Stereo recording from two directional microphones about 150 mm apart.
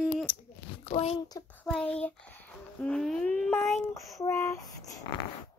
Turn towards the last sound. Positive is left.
turn(degrees=20)  # may be behind; listen again after turning